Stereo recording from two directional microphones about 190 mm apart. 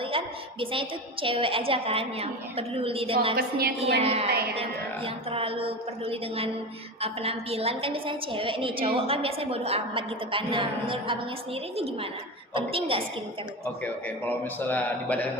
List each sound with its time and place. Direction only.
0.0 s a woman's voice: 30° right (ahead or behind)
12.5 s a woman's voice: 30° right (ahead or behind)
13.8 s a man's voice: 10° left (ahead or behind)